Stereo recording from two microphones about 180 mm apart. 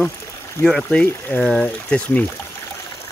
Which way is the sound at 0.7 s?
5° left (ahead or behind).